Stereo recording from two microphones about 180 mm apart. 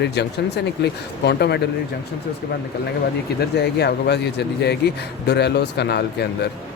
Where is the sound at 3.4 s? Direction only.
65° left (ahead or behind).